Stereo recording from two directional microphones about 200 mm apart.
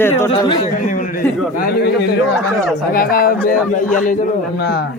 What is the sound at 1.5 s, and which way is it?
A man's voice, 50° left (ahead or behind).